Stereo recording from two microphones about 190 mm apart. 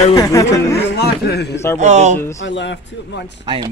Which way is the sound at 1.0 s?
60° left (ahead or behind).